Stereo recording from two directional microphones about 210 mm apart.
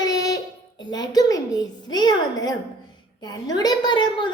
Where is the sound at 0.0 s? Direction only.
15° left (ahead or behind).